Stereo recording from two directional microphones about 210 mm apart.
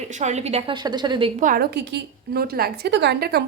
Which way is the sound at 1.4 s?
45° right (ahead or behind).